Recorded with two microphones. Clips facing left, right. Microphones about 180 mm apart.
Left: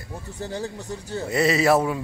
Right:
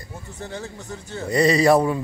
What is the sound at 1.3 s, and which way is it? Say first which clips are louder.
Speech: right 3 dB; 5° left (ahead or behind).